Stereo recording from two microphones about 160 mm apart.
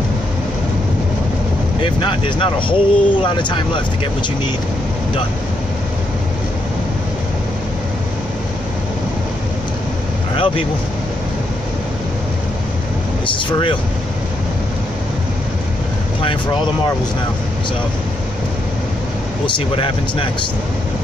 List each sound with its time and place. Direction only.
1.8 s speech: 30° left (ahead or behind)
10.3 s speech: 35° left (ahead or behind)
13.3 s speech: 30° left (ahead or behind)
19.4 s speech: 35° left (ahead or behind)